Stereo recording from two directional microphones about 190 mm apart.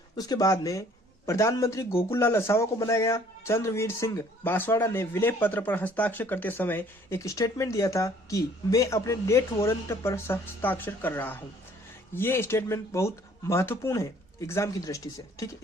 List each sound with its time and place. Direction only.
0.2 s a man's voice: 20° left (ahead or behind)